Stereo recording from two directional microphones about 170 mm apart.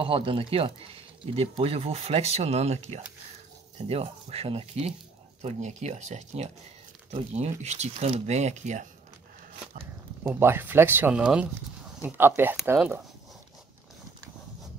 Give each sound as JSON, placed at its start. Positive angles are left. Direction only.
{"t": 0.0, "sound": "speech", "side_deg": -30}
{"t": 10.2, "sound": "speech", "side_deg": -15}